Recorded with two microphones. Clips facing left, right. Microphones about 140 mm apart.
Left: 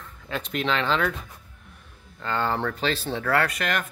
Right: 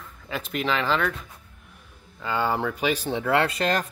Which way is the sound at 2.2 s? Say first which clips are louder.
Right 1 dB; 10° right (ahead or behind).